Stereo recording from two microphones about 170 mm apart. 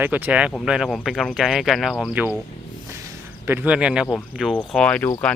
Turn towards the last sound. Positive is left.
turn(degrees=10)  # may be behind; listen again after turning